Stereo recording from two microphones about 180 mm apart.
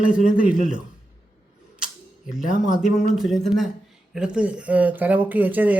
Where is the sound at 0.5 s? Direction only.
45° right (ahead or behind).